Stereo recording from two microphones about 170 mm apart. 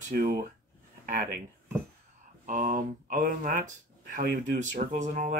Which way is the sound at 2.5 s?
50° right (ahead or behind).